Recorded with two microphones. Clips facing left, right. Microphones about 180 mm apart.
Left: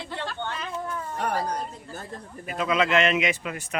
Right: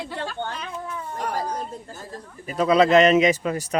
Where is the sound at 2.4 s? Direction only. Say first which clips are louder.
Right 7 dB; 40° right (ahead or behind).